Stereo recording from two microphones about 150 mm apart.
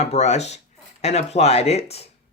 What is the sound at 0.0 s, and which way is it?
Speech, 45° left (ahead or behind).